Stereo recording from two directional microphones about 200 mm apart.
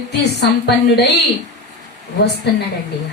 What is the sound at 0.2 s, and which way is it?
Music, 60° left (ahead or behind).